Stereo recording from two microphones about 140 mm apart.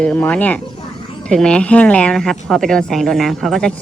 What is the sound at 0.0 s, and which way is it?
A woman's voice, 10° left (ahead or behind).